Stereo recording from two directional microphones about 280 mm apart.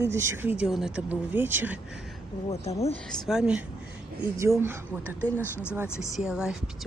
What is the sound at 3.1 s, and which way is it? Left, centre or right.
A woman's voice, centre.